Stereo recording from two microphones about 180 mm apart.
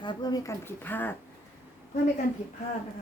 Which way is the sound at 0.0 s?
25° left (ahead or behind).